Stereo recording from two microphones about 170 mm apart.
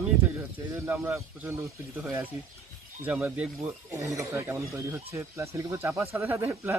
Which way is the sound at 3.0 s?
10° right (ahead or behind).